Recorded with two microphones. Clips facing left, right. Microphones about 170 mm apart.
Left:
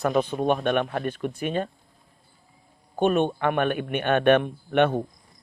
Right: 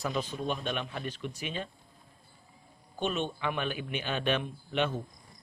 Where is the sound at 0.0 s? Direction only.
55° left (ahead or behind).